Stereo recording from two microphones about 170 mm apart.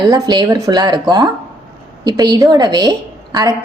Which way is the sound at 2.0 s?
25° right (ahead or behind).